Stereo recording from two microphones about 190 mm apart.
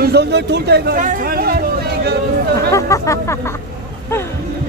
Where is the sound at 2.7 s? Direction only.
15° left (ahead or behind).